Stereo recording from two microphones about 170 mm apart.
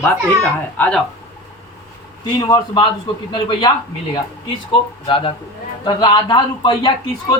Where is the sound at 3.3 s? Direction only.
25° left (ahead or behind).